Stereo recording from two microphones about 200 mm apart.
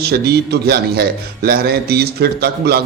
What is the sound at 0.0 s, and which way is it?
A man's voice, 50° right (ahead or behind).